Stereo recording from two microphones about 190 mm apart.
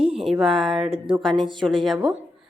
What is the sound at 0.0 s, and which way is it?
Speech, centre (ahead or behind).